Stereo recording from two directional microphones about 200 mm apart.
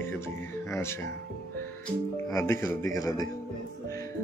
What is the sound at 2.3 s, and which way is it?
Speech, 15° left (ahead or behind).